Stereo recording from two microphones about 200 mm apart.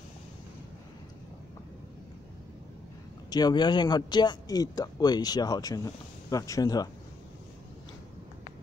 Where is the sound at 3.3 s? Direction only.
20° left (ahead or behind).